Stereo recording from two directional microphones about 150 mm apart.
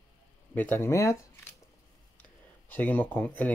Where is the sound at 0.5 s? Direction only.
10° left (ahead or behind).